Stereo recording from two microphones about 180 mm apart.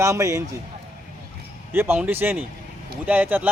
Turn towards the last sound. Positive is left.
turn(degrees=-10)  # may be behind; listen again after turning